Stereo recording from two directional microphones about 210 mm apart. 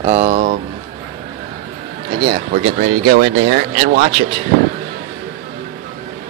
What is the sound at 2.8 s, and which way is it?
Speech, 40° right (ahead or behind).